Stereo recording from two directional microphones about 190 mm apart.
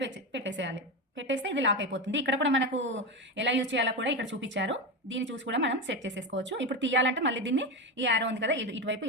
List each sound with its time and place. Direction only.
0.0 s a woman's voice: 70° right (ahead or behind)